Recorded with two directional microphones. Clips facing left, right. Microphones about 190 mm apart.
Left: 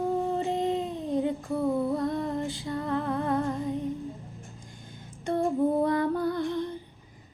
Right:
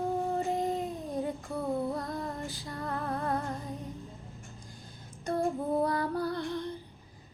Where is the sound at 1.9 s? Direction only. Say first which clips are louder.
Left 7 dB; 25° left (ahead or behind).